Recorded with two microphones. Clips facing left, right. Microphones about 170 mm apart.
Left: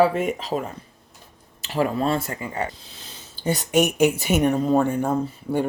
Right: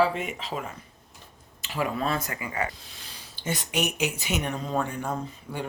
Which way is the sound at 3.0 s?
25° left (ahead or behind).